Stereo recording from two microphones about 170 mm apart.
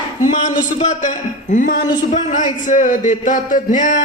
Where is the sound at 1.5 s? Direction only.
55° left (ahead or behind).